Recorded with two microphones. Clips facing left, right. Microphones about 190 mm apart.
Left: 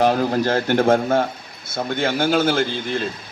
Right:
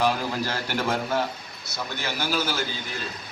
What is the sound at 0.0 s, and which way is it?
A man's voice, 50° left (ahead or behind).